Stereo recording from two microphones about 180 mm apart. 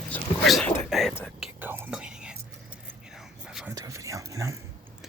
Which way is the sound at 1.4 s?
10° right (ahead or behind).